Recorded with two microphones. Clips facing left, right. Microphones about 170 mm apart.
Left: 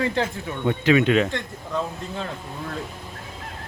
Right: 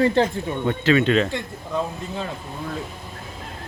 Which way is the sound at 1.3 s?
5° right (ahead or behind).